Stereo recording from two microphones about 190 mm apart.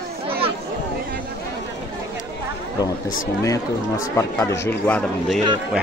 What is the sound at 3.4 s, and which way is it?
Speech, 15° left (ahead or behind).